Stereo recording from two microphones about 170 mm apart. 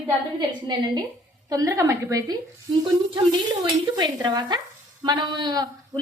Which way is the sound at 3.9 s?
25° right (ahead or behind).